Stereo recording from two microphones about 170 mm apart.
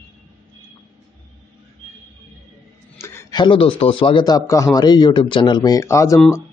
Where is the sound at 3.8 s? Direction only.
30° left (ahead or behind).